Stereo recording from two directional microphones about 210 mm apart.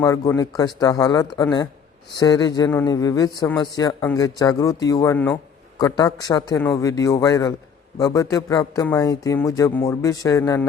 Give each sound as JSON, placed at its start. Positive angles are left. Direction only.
{"t": 0.0, "sound": "speech", "side_deg": 15}